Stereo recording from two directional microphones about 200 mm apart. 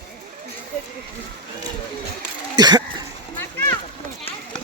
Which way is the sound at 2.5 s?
20° right (ahead or behind).